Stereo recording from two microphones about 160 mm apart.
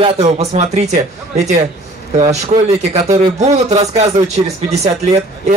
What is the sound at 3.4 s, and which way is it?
Speech, 40° right (ahead or behind).